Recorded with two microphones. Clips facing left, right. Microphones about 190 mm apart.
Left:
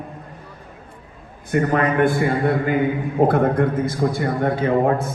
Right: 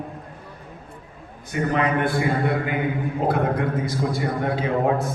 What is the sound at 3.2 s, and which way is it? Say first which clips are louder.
Speech: left 7 dB; 55° left (ahead or behind).